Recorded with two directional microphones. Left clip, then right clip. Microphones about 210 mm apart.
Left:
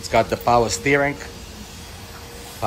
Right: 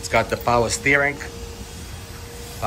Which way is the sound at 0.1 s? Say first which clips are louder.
Left 2 dB; 15° left (ahead or behind).